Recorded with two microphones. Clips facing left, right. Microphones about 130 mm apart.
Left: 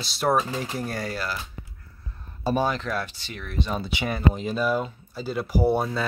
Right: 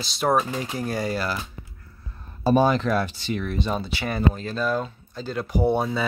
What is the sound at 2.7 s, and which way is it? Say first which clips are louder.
Speech: right 6 dB; 20° right (ahead or behind).